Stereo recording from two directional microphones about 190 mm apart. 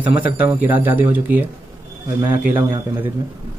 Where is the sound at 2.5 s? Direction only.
10° right (ahead or behind).